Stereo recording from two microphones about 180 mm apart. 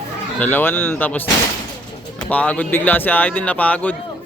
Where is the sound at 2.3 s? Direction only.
10° left (ahead or behind).